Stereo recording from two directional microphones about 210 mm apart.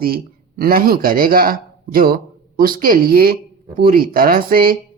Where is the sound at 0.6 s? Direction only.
45° right (ahead or behind).